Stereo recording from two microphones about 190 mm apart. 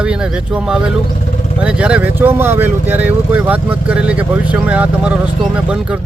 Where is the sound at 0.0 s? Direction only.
5° right (ahead or behind).